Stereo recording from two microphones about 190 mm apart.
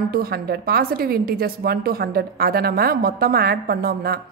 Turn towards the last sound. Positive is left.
turn(degrees=-55)  # may be behind; listen again after turning